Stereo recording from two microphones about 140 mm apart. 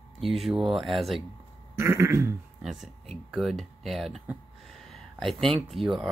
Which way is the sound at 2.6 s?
Centre (ahead or behind).